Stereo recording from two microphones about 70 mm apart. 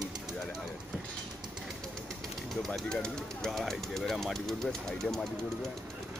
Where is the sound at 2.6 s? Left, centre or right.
Centre.